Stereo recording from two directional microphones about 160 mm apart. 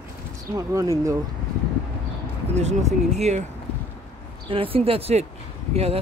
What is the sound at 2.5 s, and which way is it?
Speech, 45° right (ahead or behind).